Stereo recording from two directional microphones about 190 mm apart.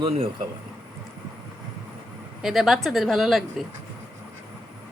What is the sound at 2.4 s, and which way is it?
Speech, centre (ahead or behind).